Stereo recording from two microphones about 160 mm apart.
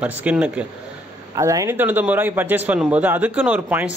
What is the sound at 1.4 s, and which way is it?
Speech, 20° right (ahead or behind).